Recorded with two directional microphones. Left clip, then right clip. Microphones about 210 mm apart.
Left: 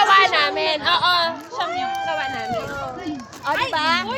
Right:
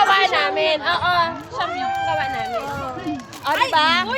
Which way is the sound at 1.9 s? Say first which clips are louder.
Right 2 dB; 25° left (ahead or behind).